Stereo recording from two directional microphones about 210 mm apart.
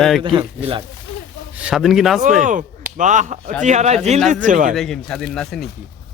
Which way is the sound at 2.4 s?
35° right (ahead or behind).